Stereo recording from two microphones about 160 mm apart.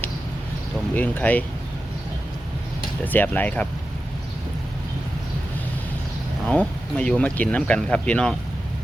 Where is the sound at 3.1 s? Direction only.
10° left (ahead or behind).